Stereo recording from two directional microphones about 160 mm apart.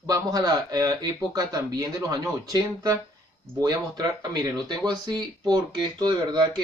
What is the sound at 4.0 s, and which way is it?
Speech, 25° right (ahead or behind).